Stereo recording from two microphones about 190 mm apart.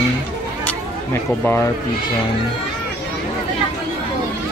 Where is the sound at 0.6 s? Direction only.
10° left (ahead or behind).